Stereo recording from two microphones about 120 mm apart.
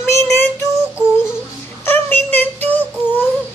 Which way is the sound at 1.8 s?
15° left (ahead or behind).